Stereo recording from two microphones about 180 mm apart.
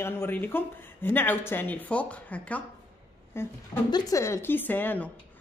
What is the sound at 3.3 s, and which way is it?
A woman's voice, 20° left (ahead or behind).